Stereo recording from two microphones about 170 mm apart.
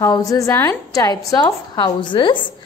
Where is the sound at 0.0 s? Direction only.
20° left (ahead or behind).